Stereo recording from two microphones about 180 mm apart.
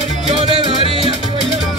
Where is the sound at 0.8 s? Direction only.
30° left (ahead or behind).